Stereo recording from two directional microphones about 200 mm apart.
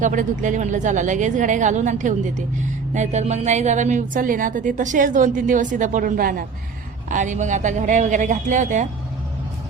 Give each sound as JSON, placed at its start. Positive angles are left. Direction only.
{"t": 0.0, "sound": "a woman's voice", "side_deg": -40}